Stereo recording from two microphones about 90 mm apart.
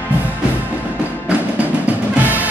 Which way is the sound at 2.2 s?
20° right (ahead or behind).